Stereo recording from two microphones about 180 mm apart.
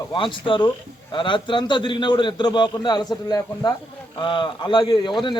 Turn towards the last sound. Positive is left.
turn(degrees=25)  # may be behind; listen again after turning